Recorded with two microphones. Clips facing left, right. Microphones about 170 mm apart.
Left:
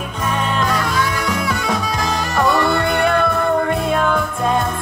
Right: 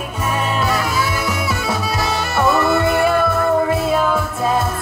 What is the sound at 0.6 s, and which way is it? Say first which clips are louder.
Music: even; 10° right (ahead or behind).